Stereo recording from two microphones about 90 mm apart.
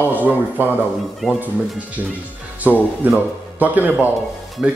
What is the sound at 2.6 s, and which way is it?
A man's voice, 20° right (ahead or behind).